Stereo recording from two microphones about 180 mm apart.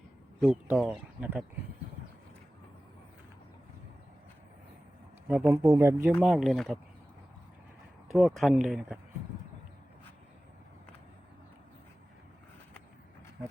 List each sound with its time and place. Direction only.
0.4 s speech: 5° right (ahead or behind)
5.5 s speech: 15° right (ahead or behind)
6.2 s speech: centre (ahead or behind)
8.0 s speech: centre (ahead or behind)